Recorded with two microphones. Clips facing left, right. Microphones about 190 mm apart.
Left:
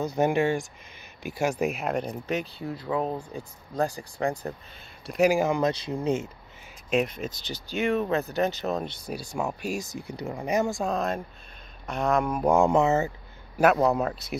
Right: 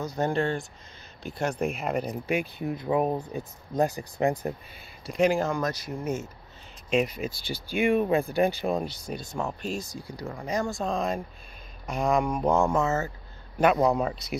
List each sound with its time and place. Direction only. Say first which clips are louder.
0.2 s speech: left 3 dB; 10° left (ahead or behind); by 2.5 s 10° right (ahead or behind)
2.6 s speech: right 3 dB; 20° right (ahead or behind)
5.0 s speech: left 2 dB; 5° left (ahead or behind)
5.5 s speech: left 4 dB; 20° left (ahead or behind)
6.9 s speech: even; centre (ahead or behind); by 13.1 s 15° left (ahead or behind)
13.6 s speech: left 1 dB; 5° left (ahead or behind)